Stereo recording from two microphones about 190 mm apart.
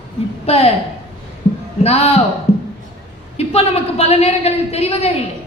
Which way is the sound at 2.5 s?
35° left (ahead or behind).